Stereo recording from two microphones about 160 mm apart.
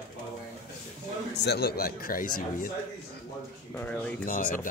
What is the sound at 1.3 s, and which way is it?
Speech, 90° left.